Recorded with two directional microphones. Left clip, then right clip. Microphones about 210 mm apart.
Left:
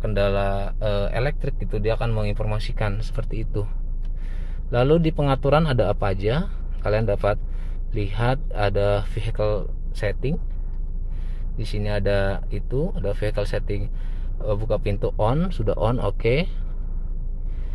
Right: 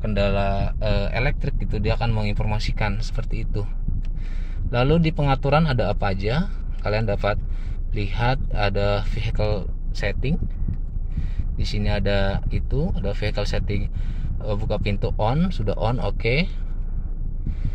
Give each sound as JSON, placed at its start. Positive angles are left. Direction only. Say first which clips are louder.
{"t": 0.0, "sound": "speech", "louder": "left 1 dB", "side_deg": 5}
{"t": 4.6, "sound": "speech", "louder": "left 2 dB", "side_deg": 5}
{"t": 11.5, "sound": "speech", "louder": "even", "side_deg": 5}